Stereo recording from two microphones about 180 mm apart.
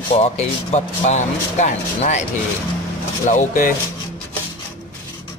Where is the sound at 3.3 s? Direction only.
45° left (ahead or behind).